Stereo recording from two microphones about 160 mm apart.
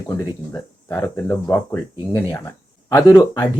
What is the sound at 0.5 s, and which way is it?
Speech, 15° left (ahead or behind).